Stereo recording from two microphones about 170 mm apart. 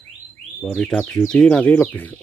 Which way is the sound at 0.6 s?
Centre (ahead or behind).